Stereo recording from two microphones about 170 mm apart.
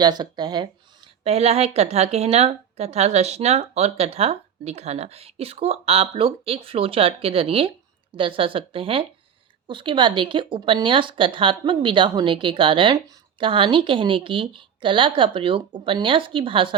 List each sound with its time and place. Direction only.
0.0 s a woman's voice: 25° right (ahead or behind)